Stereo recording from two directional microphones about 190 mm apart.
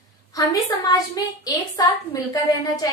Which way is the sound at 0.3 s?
20° left (ahead or behind).